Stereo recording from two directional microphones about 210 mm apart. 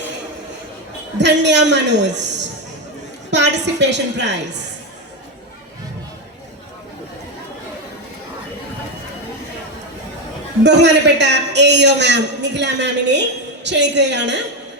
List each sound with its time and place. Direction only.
1.2 s a man's voice: 55° right (ahead or behind)
10.6 s a man's voice: 55° right (ahead or behind)